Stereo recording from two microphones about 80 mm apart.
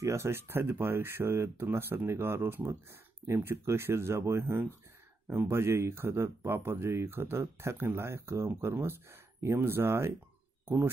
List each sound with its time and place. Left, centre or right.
0.0 s speech: right